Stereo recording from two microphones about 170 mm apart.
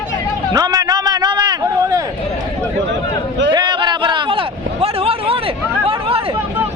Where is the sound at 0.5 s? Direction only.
20° right (ahead or behind).